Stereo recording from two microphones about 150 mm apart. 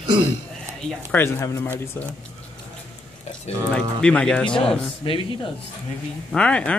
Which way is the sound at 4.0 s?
5° left (ahead or behind).